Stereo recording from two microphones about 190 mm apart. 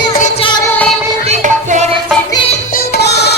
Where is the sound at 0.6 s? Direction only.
5° left (ahead or behind).